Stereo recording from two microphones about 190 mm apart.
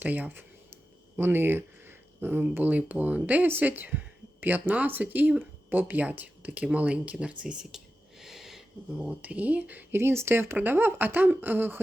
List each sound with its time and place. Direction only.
0.0 s speech: 10° right (ahead or behind)